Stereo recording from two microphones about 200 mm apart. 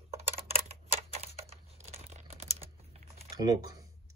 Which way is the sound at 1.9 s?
30° right (ahead or behind).